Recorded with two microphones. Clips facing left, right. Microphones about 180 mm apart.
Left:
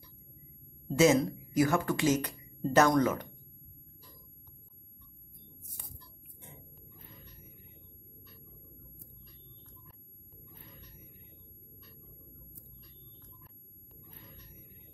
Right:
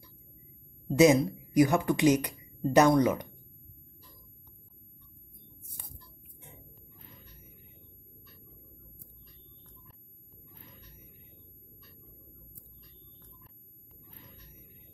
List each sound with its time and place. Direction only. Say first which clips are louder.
0.9 s speech: right 3 dB; 15° right (ahead or behind)